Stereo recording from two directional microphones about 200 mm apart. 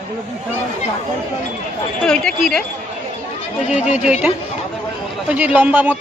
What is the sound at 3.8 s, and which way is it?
Speech, 35° left (ahead or behind).